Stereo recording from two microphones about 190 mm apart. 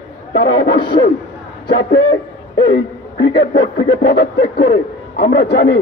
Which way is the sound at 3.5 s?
70° left (ahead or behind).